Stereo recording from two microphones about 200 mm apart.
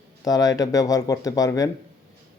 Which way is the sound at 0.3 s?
20° left (ahead or behind).